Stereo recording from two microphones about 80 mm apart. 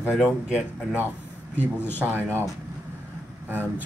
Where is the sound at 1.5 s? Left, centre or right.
Left.